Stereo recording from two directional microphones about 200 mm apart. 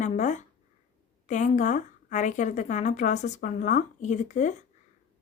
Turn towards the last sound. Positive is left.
turn(degrees=35)  # may be behind; listen again after turning